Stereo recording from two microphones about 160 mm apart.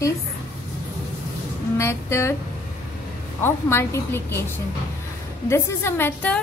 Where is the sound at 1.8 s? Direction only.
15° left (ahead or behind).